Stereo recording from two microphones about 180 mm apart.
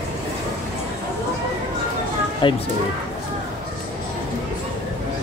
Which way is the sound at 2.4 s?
25° left (ahead or behind).